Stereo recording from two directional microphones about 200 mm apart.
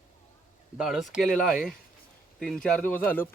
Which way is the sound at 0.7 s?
5° right (ahead or behind).